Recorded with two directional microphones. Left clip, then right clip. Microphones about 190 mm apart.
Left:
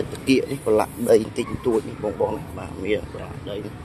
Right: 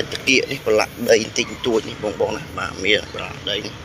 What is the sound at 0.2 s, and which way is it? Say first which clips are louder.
Speech: right 4 dB; 15° left (ahead or behind).